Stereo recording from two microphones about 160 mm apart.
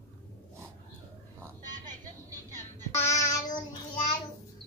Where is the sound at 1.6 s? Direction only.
55° right (ahead or behind).